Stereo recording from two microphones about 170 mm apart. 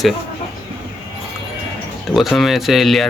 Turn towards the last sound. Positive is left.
turn(degrees=0)  # may be behind; listen again after turning